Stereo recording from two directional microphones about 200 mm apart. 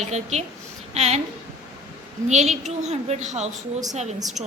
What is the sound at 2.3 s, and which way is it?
A woman's voice, 35° right (ahead or behind).